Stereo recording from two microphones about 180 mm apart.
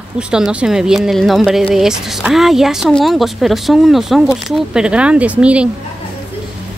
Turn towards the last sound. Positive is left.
turn(degrees=-5)  # may be behind; listen again after turning